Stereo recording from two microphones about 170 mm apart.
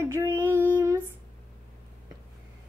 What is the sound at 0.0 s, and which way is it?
Female singing, 15° right (ahead or behind).